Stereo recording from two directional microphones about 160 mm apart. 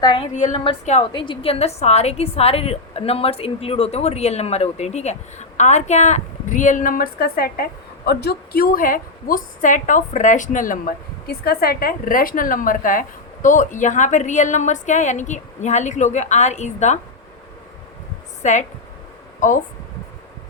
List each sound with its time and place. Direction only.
0.0 s a woman's voice: 30° left (ahead or behind); by 17.0 s 45° left (ahead or behind)
18.4 s a woman's voice: 50° left (ahead or behind)